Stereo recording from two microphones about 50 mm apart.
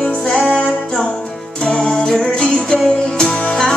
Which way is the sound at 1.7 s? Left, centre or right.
Centre.